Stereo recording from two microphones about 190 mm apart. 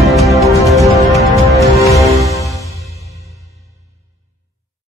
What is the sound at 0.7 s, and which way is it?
Music, 15° right (ahead or behind).